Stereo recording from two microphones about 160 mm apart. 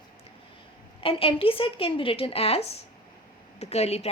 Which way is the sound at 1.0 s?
35° left (ahead or behind).